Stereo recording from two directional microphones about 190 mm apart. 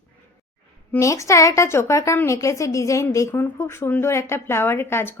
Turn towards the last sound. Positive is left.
turn(degrees=10)  # may be behind; listen again after turning